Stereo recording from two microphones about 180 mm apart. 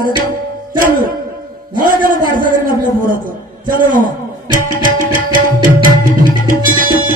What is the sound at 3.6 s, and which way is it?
Tabla, 50° right (ahead or behind).